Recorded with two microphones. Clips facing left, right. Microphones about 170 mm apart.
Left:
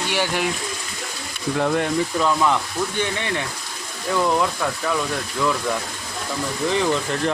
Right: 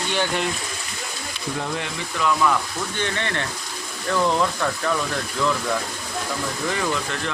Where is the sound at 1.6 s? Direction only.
55° left (ahead or behind).